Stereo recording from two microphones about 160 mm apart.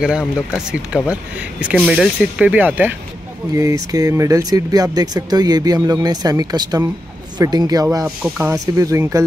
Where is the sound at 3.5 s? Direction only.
20° right (ahead or behind).